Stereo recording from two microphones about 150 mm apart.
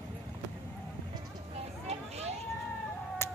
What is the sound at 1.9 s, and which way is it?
Vehicle, 45° right (ahead or behind).